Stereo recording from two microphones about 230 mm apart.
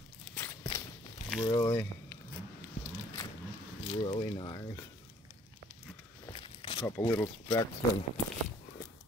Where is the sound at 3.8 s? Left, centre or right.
Left.